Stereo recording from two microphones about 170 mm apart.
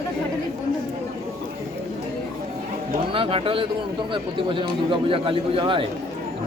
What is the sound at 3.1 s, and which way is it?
A man's voice, 30° right (ahead or behind).